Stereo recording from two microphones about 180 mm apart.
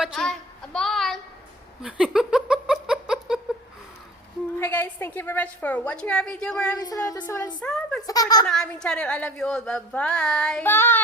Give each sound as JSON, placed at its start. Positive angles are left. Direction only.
{"t": 0.0, "sound": "a sound", "side_deg": 0}
{"t": 4.6, "sound": "a woman's voice", "side_deg": 10}
{"t": 6.7, "sound": "speech", "side_deg": 20}
{"t": 7.6, "sound": "speech", "side_deg": 5}
{"t": 8.0, "sound": "speech", "side_deg": 20}
{"t": 8.4, "sound": "speech", "side_deg": 5}